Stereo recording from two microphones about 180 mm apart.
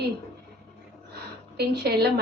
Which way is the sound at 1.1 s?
65° right (ahead or behind).